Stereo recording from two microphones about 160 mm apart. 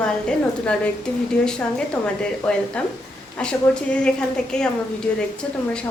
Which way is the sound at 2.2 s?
5° left (ahead or behind).